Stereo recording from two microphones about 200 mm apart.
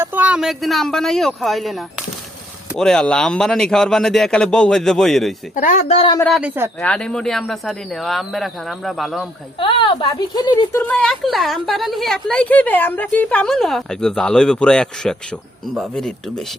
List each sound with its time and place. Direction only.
0.0 s a woman's voice: 10° right (ahead or behind)
5.5 s speech: 40° left (ahead or behind)
6.2 s a woman's voice: 5° right (ahead or behind)
9.6 s a woman's voice: 25° left (ahead or behind); by 16.4 s centre (ahead or behind)